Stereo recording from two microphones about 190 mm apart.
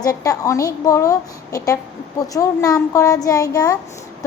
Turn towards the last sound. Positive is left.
turn(degrees=20)  # may be behind; listen again after turning